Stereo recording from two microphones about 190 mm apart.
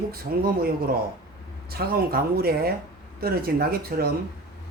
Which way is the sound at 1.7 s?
55° right (ahead or behind).